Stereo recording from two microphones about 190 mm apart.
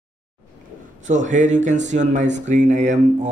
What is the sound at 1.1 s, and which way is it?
Speech, 40° right (ahead or behind).